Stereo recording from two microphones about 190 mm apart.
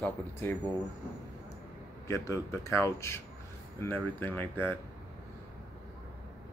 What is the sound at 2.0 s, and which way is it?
Speech, 15° left (ahead or behind).